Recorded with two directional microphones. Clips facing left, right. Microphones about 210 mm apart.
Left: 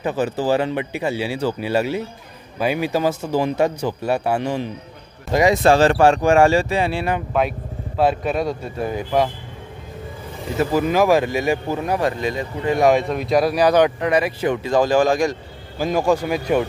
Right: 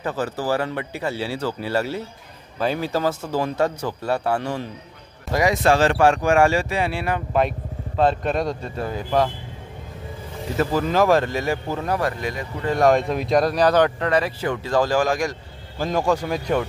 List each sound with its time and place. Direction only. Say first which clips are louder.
0.0 s speech: left 4 dB; 15° left (ahead or behind)
5.3 s speech: left 4 dB; 25° left (ahead or behind)
8.0 s speech: left 1 dB; 5° left (ahead or behind)
10.7 s speech: left 2 dB; 10° left (ahead or behind)
12.6 s speech: left 1 dB; 10° left (ahead or behind); by 15.3 s 25° left (ahead or behind)
15.8 s speech: left 3 dB; 10° left (ahead or behind)